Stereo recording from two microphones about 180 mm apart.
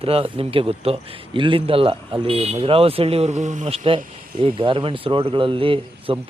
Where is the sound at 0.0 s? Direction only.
30° right (ahead or behind).